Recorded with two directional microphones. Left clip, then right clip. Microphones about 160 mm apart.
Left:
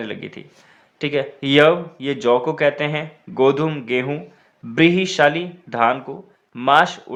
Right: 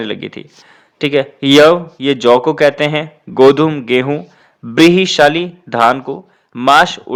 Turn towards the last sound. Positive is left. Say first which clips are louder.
# right 6 dB
turn(degrees=-50)  # may be behind; listen again after turning